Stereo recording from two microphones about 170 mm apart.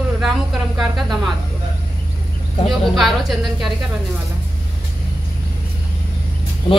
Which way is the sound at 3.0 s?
Centre (ahead or behind).